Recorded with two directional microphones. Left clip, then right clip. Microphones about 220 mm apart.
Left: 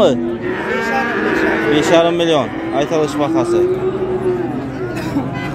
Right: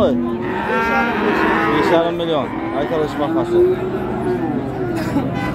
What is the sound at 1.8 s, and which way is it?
Speech, 35° left (ahead or behind).